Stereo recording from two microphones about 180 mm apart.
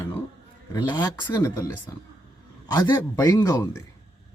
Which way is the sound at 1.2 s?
15° left (ahead or behind).